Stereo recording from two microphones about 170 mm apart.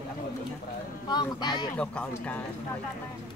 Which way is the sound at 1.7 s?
5° left (ahead or behind).